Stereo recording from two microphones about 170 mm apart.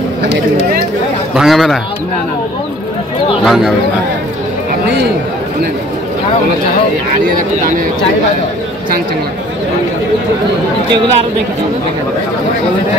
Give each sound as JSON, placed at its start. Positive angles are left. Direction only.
{"t": 1.3, "sound": "a man's voice", "side_deg": 0}
{"t": 3.4, "sound": "a man's voice", "side_deg": 0}